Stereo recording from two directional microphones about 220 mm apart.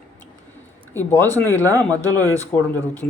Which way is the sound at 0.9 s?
10° left (ahead or behind).